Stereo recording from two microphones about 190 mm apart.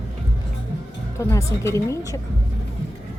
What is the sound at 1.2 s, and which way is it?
A woman's voice, 15° left (ahead or behind).